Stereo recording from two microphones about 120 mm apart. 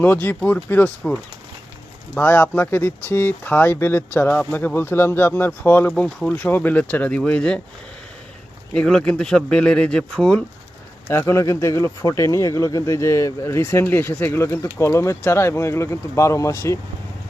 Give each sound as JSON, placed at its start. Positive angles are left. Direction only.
{"t": 0.0, "sound": "speech", "side_deg": 15}
{"t": 8.7, "sound": "speech", "side_deg": 5}
{"t": 11.1, "sound": "speech", "side_deg": 25}